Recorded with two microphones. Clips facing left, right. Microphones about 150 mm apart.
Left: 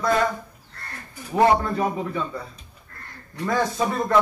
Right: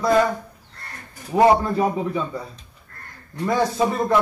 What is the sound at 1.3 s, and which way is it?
Speech, 15° right (ahead or behind).